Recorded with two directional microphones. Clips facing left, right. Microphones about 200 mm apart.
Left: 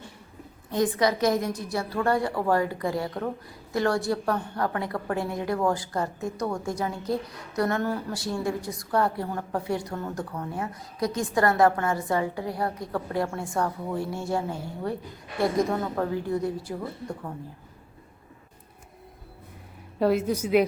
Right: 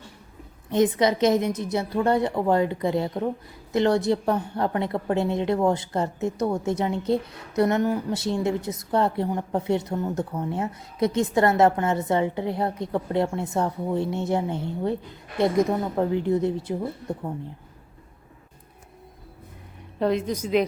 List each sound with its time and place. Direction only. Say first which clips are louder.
0.7 s a woman's voice: right 3 dB; 20° right (ahead or behind)
20.0 s a woman's voice: left 1 dB; 5° left (ahead or behind)